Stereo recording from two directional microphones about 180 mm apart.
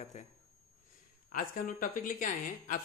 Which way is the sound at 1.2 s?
50° left (ahead or behind).